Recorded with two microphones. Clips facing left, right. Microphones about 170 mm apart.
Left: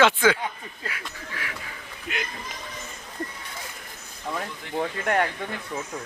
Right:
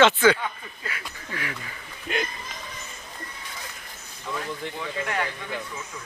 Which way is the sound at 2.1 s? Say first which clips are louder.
Right 5 dB; 35° right (ahead or behind).